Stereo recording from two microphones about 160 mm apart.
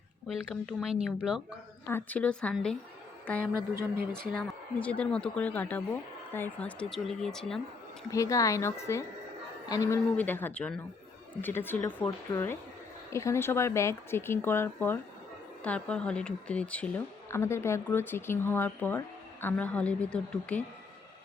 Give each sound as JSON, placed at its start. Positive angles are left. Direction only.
{"t": 0.3, "sound": "speech", "side_deg": 0}
{"t": 1.9, "sound": "a woman's voice", "side_deg": 10}
{"t": 4.3, "sound": "a woman's voice", "side_deg": 5}
{"t": 8.1, "sound": "a woman's voice", "side_deg": 20}